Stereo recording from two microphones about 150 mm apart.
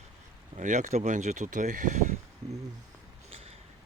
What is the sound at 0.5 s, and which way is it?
Speech, 55° right (ahead or behind).